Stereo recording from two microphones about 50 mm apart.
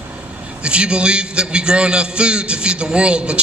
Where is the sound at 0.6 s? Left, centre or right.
Right.